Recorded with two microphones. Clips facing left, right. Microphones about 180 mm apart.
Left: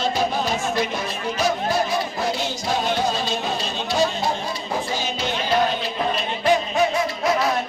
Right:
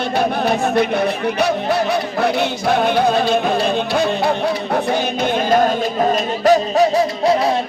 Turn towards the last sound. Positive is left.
turn(degrees=-35)  # may be behind; listen again after turning